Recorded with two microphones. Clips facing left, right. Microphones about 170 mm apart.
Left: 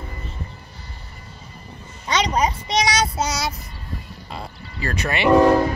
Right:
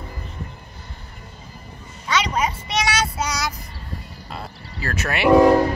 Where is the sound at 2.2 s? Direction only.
40° left (ahead or behind).